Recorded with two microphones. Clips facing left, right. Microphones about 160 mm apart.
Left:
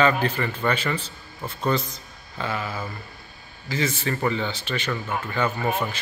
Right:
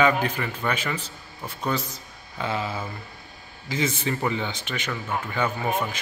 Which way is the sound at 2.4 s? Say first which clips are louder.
Right 1 dB; 20° right (ahead or behind).